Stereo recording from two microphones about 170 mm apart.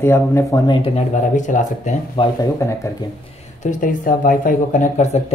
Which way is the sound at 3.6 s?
50° left (ahead or behind).